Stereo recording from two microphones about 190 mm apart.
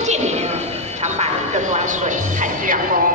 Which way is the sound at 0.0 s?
35° right (ahead or behind).